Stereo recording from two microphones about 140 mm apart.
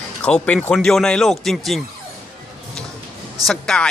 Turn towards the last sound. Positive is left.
turn(degrees=5)  # may be behind; listen again after turning